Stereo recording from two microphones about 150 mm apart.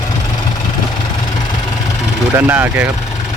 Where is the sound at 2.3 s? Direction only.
15° right (ahead or behind).